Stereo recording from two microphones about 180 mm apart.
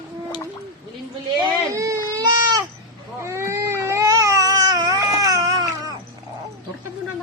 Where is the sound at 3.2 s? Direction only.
15° right (ahead or behind).